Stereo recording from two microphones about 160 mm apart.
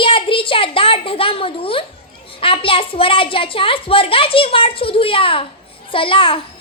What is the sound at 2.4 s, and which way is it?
A child's voice, 35° left (ahead or behind).